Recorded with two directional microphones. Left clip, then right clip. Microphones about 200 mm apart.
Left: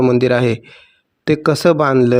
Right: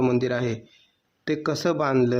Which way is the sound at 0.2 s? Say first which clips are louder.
Left 11 dB; 35° left (ahead or behind).